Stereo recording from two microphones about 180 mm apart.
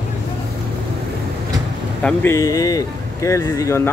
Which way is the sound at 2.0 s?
15° left (ahead or behind).